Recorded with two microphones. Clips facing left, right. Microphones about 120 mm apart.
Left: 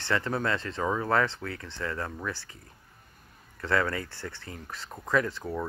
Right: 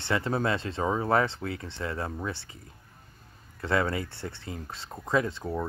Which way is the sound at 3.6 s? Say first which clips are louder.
Right 1 dB; 20° right (ahead or behind).